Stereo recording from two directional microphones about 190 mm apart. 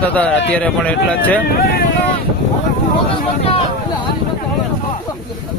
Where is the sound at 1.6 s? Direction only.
55° left (ahead or behind).